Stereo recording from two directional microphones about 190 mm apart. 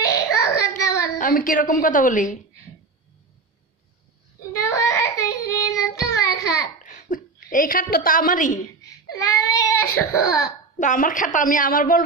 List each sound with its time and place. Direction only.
0.0 s child singing: 15° left (ahead or behind)
1.1 s a woman's voice: 45° left (ahead or behind)
4.8 s child singing: 15° left (ahead or behind)
6.8 s a sound: 45° left (ahead or behind)
7.5 s a woman's voice: 45° left (ahead or behind)
8.8 s speech: 20° left (ahead or behind)
10.8 s a woman's voice: 45° left (ahead or behind)